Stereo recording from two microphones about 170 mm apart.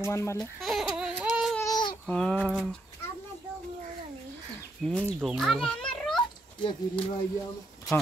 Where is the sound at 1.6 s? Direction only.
25° left (ahead or behind).